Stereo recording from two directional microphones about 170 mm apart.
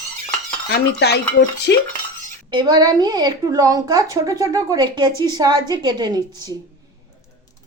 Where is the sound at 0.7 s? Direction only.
70° left (ahead or behind).